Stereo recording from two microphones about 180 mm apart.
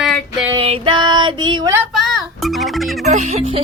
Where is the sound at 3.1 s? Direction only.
40° right (ahead or behind).